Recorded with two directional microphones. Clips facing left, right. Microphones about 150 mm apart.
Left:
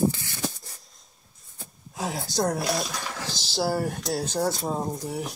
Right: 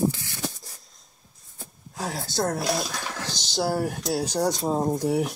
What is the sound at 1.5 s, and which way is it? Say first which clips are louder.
Speech: even; centre (ahead or behind).